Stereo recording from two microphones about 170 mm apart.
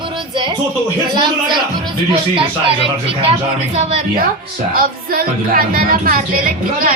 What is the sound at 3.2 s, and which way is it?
Speech, 35° right (ahead or behind).